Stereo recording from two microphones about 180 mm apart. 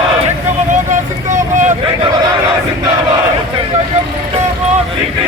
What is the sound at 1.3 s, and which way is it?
Vehicle, 45° right (ahead or behind).